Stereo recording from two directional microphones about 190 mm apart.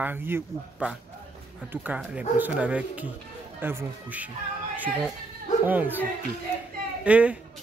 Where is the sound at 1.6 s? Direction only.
10° right (ahead or behind).